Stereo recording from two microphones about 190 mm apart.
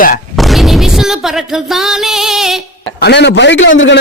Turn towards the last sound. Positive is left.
turn(degrees=75)  # may be behind; listen again after turning